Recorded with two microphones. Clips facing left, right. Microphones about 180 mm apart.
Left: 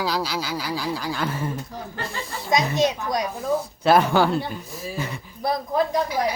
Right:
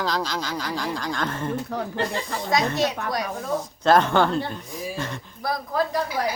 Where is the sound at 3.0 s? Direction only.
65° right (ahead or behind).